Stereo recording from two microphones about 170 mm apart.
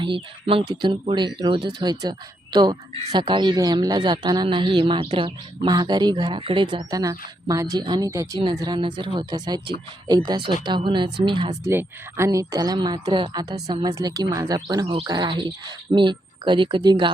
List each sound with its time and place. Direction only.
0.0 s speech: 30° right (ahead or behind)
11.6 s speech: 15° right (ahead or behind)